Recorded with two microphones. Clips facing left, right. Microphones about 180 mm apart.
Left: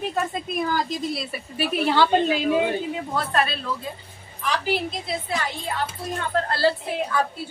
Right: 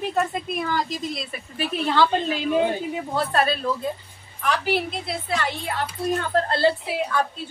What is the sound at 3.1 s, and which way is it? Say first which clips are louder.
Speech: right 3 dB; 40° right (ahead or behind).